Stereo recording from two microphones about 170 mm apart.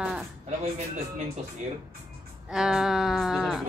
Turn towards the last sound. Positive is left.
turn(degrees=0)  # may be behind; listen again after turning